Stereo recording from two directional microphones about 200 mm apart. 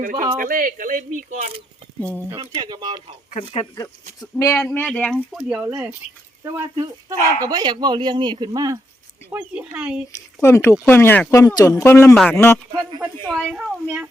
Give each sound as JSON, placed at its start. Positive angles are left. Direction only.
{"t": 0.0, "sound": "speech", "side_deg": -40}
{"t": 3.3, "sound": "speech", "side_deg": 30}
{"t": 4.4, "sound": "speech", "side_deg": 15}
{"t": 9.3, "sound": "speech", "side_deg": -5}
{"t": 10.4, "sound": "speech", "side_deg": 10}
{"t": 13.0, "sound": "speech", "side_deg": 0}